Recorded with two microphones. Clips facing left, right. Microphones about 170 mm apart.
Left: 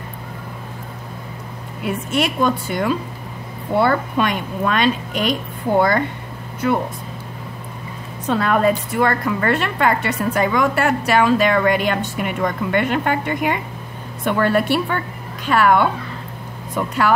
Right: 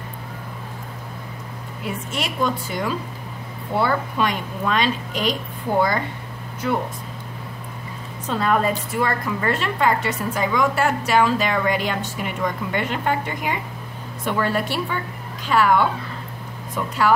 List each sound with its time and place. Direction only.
1.9 s a woman's voice: 60° left (ahead or behind)
8.3 s a woman's voice: 65° left (ahead or behind)